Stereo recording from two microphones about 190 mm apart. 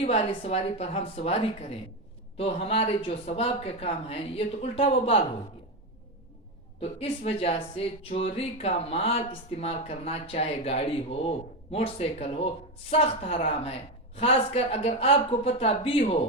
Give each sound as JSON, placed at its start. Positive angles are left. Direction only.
{"t": 0.0, "sound": "speech", "side_deg": 30}
{"t": 6.7, "sound": "speech", "side_deg": 30}